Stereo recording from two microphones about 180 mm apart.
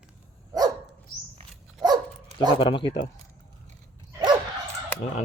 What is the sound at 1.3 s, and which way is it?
Dog, 20° right (ahead or behind).